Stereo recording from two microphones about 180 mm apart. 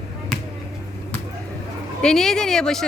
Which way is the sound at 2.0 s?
5° left (ahead or behind).